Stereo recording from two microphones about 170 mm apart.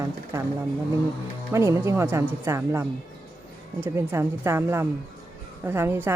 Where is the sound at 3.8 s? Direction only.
15° right (ahead or behind).